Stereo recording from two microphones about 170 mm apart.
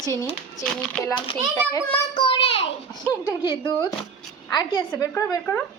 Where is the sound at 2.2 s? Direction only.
30° left (ahead or behind).